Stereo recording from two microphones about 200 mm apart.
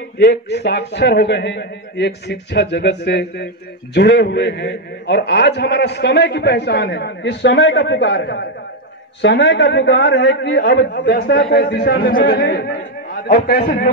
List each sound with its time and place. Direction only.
0.2 s a man's voice: 55° left (ahead or behind)
13.1 s a man's voice: 45° left (ahead or behind)